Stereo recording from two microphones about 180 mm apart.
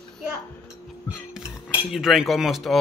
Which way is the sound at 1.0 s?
5° right (ahead or behind).